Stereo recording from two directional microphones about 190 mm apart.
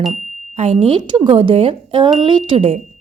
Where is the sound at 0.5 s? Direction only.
35° right (ahead or behind).